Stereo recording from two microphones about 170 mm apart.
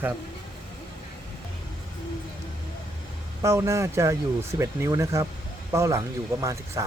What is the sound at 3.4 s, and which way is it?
Speech, 15° right (ahead or behind).